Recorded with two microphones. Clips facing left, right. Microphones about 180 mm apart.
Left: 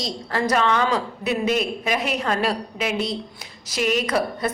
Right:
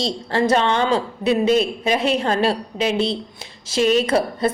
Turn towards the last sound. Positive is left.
turn(degrees=-30)  # may be behind; listen again after turning